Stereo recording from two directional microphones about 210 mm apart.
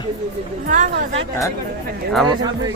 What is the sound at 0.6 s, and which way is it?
Speech, 40° right (ahead or behind).